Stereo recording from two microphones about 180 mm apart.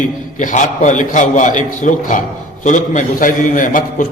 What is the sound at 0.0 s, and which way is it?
A man's voice, 45° left (ahead or behind).